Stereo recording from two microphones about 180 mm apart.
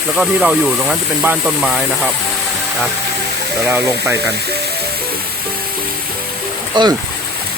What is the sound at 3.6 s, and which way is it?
Speech, 10° right (ahead or behind).